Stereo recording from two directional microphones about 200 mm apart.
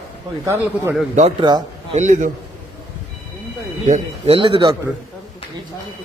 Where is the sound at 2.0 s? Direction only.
40° right (ahead or behind).